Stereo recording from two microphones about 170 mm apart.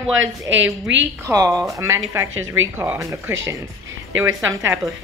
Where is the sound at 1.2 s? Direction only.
20° right (ahead or behind).